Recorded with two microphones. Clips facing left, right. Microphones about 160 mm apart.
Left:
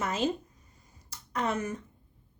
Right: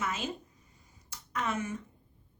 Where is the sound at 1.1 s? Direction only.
35° left (ahead or behind).